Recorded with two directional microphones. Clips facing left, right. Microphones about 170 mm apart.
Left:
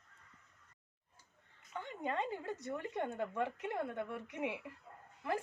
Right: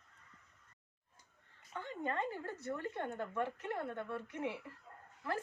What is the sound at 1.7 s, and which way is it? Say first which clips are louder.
A woman's voice: even; 15° left (ahead or behind).